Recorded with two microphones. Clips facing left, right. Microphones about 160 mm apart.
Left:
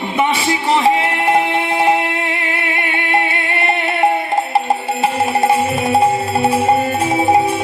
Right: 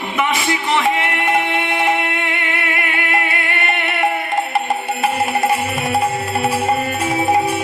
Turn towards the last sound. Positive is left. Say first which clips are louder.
# left 3 dB
turn(degrees=25)  # may be behind; listen again after turning